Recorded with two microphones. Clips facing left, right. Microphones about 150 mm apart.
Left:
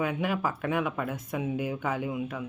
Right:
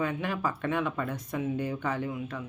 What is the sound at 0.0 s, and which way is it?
Speech, 10° left (ahead or behind).